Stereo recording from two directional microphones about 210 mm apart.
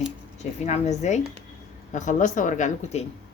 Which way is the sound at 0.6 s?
35° left (ahead or behind).